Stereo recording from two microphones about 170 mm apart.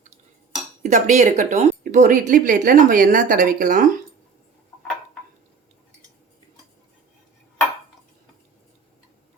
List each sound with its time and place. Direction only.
0.8 s speech: 45° right (ahead or behind)